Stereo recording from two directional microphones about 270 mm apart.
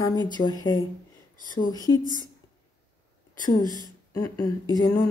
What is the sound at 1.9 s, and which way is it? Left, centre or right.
Speech, centre.